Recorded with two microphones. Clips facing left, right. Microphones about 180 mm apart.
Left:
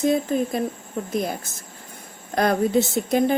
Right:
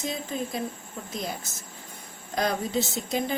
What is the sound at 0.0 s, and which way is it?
Speech, 55° left (ahead or behind).